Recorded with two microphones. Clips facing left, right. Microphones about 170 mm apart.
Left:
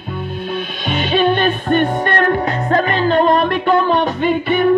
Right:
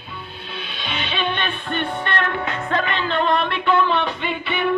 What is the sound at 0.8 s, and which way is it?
Music, 45° left (ahead or behind).